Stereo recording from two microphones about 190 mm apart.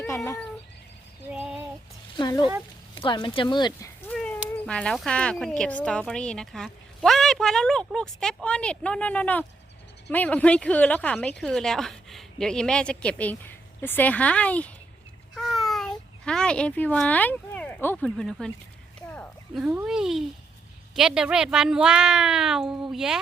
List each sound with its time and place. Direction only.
1.3 s female singing: 10° right (ahead or behind)
2.1 s a sound: 20° left (ahead or behind)
2.9 s speech: 25° left (ahead or behind)
4.1 s speech: 5° left (ahead or behind)
15.4 s a sound: centre (ahead or behind)
19.5 s speech: 5° right (ahead or behind)